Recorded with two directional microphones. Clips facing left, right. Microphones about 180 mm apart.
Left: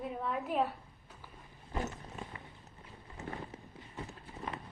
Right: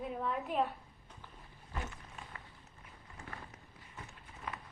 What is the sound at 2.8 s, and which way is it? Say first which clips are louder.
Clip-clop: left 7 dB; 25° left (ahead or behind).